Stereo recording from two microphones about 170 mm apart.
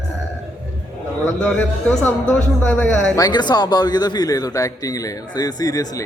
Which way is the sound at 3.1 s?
25° left (ahead or behind).